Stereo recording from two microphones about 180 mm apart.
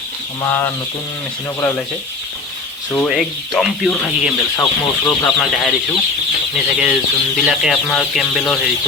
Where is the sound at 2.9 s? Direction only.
5° left (ahead or behind).